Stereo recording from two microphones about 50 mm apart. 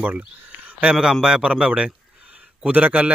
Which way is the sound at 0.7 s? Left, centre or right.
Right.